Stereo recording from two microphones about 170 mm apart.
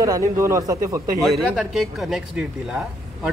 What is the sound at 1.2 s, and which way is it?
A man's voice, centre (ahead or behind).